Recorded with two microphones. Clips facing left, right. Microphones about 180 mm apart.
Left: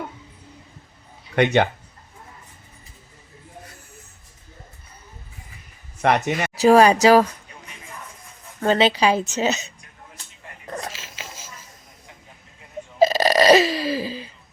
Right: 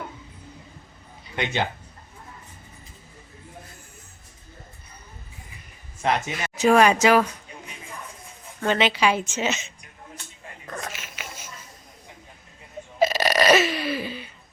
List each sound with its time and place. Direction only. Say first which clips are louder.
1.4 s speech: left 9 dB; 60° left (ahead or behind)
6.0 s speech: left 5 dB; 65° left (ahead or behind)
6.6 s a woman's voice: left 3 dB; 35° left (ahead or behind)
8.6 s a woman's voice: left 4 dB; 35° left (ahead or behind)
10.7 s a sound: left 3 dB; 30° left (ahead or behind)
13.1 s a sound: left 4 dB; 35° left (ahead or behind)